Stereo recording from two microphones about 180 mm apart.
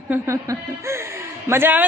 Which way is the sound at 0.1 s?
15° right (ahead or behind).